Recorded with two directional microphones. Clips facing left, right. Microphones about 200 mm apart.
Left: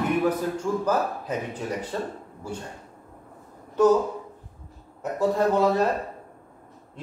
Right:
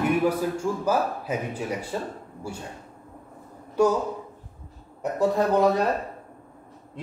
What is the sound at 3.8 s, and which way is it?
Speech, 10° right (ahead or behind).